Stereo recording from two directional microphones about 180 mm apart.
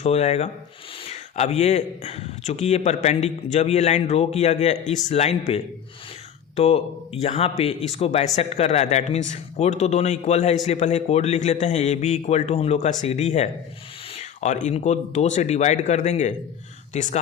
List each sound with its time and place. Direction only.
0.0 s a man's voice: 35° left (ahead or behind)